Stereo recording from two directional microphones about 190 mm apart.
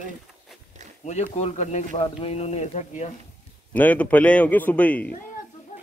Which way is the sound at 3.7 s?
10° left (ahead or behind).